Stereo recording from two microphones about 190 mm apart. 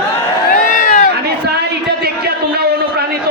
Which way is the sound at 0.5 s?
50° left (ahead or behind).